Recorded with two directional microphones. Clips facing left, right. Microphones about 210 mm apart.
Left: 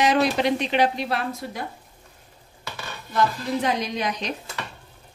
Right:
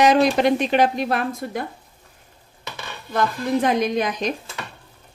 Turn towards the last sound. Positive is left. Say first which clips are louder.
# right 5 dB
turn(degrees=-50)  # may be behind; listen again after turning